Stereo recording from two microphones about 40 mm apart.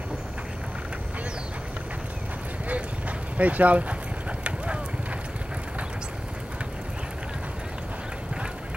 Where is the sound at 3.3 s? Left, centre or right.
Right.